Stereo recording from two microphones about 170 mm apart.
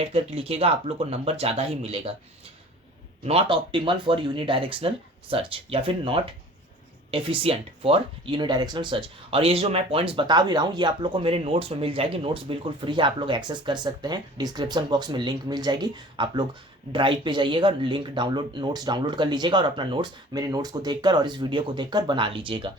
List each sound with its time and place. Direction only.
0.0 s speech: 35° right (ahead or behind)
3.2 s speech: 30° right (ahead or behind)